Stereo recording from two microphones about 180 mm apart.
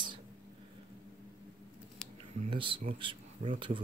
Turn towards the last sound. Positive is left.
turn(degrees=-30)  # may be behind; listen again after turning